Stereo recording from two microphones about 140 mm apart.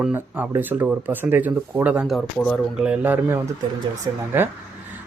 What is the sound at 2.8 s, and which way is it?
Speech, 5° right (ahead or behind).